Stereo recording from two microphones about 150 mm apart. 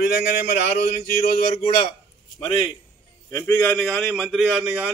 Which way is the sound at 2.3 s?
40° left (ahead or behind).